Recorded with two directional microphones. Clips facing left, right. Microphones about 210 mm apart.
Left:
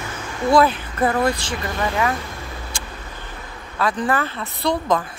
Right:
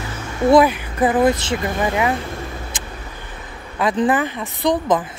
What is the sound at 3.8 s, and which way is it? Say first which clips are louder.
Speech: right 4 dB; 20° right (ahead or behind).